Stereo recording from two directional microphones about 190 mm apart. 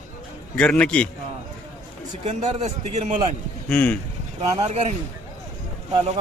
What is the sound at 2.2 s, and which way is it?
Speech, 35° right (ahead or behind).